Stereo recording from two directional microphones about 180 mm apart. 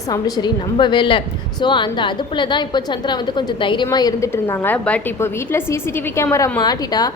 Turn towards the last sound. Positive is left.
turn(degrees=20)  # may be behind; listen again after turning